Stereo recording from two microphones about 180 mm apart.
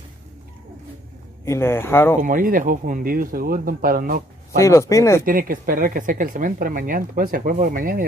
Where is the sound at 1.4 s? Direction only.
15° left (ahead or behind).